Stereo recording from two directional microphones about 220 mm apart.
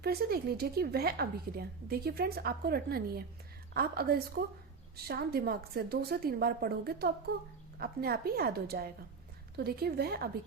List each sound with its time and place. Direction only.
0.0 s speech: 45° right (ahead or behind)